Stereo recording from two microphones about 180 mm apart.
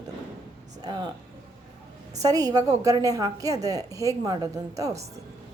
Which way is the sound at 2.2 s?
20° right (ahead or behind).